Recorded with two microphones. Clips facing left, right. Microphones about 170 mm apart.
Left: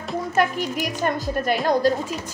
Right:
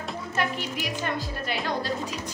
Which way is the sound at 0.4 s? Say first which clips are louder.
Left 7 dB; 45° left (ahead or behind).